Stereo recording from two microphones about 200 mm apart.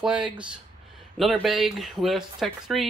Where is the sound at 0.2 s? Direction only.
5° right (ahead or behind).